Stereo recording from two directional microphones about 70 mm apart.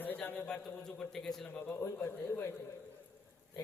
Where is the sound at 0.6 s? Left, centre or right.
Centre.